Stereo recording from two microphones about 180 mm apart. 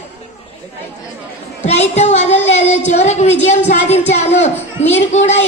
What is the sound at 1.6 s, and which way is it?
A man's voice, 40° left (ahead or behind).